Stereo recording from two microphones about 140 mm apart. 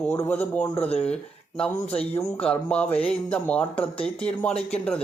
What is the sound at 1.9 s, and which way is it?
Speech, 45° left (ahead or behind).